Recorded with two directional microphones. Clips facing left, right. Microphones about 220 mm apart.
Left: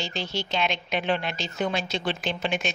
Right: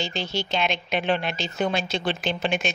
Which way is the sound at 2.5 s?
70° right (ahead or behind).